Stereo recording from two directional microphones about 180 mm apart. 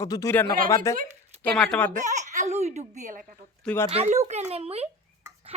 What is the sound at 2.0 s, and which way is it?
A child's voice, 40° right (ahead or behind).